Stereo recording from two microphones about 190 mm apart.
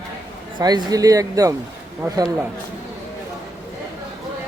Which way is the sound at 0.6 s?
20° right (ahead or behind).